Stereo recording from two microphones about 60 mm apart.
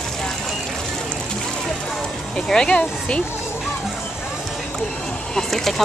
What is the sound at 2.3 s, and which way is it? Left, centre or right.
Speech, centre.